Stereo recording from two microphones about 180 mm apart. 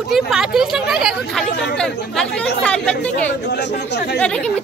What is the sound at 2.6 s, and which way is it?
Speech, 5° left (ahead or behind).